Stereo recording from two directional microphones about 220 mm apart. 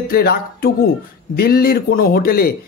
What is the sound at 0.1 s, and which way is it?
Speech, 45° left (ahead or behind).